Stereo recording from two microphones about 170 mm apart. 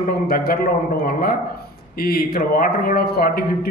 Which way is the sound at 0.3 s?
65° left (ahead or behind).